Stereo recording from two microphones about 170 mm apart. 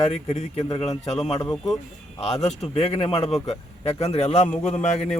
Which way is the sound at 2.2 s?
40° left (ahead or behind).